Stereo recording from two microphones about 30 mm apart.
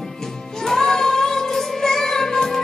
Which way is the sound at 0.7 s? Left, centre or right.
Centre.